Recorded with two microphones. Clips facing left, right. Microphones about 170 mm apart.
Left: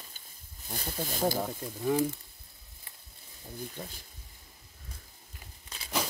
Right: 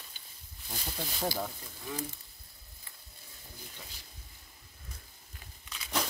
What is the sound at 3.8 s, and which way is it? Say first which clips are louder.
Speech: left 9 dB; 50° left (ahead or behind).